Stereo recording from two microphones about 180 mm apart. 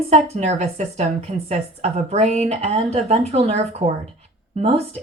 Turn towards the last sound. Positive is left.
turn(degrees=-35)  # may be behind; listen again after turning